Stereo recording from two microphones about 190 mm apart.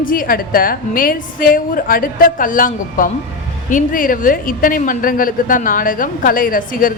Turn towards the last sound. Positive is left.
turn(degrees=45)  # may be behind; listen again after turning